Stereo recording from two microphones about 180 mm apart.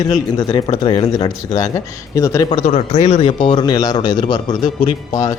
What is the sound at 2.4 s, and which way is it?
Speech, 35° left (ahead or behind).